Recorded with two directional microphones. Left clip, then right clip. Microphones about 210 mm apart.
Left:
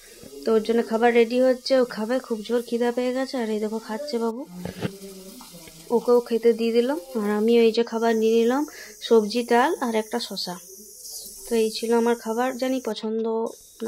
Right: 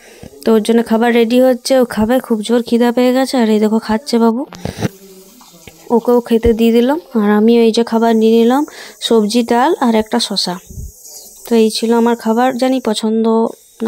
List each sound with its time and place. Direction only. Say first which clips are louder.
0.4 s speech: right 9 dB; 40° right (ahead or behind)